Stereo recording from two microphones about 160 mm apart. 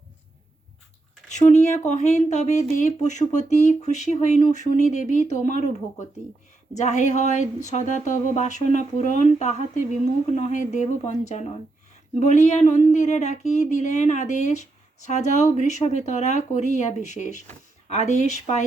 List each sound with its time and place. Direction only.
1.3 s speech: 45° left (ahead or behind)